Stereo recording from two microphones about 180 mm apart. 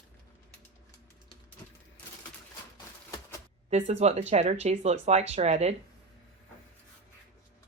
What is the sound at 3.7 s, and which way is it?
Speech, 40° right (ahead or behind).